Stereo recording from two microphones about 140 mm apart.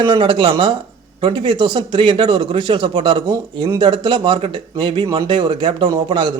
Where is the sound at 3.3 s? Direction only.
25° right (ahead or behind).